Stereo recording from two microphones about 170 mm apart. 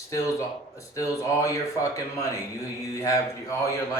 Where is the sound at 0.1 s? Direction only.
20° left (ahead or behind).